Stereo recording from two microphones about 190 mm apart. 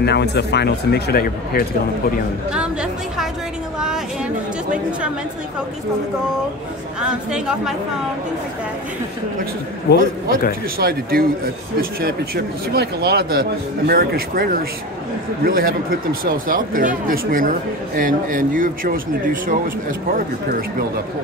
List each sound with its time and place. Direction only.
0.0 s speech: 60° left (ahead or behind)
2.5 s a sound: 5° right (ahead or behind)
7.0 s a woman's voice: 5° right (ahead or behind)
9.9 s speech: 60° left (ahead or behind)
10.8 s speech: 55° right (ahead or behind)